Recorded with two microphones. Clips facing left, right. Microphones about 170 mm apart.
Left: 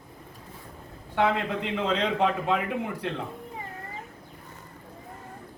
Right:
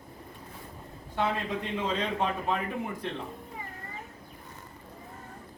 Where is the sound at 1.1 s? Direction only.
70° left (ahead or behind); by 3.2 s 85° left.